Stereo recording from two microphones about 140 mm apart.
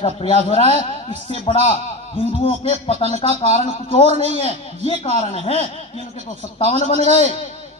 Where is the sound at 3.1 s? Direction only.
55° left (ahead or behind).